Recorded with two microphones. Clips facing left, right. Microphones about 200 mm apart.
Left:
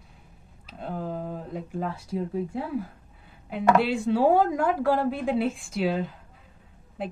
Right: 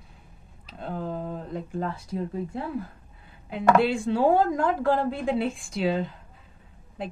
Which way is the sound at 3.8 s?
5° left (ahead or behind).